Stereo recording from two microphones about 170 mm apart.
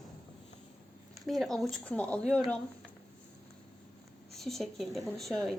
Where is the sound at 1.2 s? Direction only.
Centre (ahead or behind).